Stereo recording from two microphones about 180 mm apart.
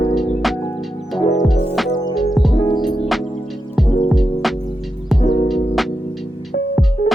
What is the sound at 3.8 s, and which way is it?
Music, centre (ahead or behind).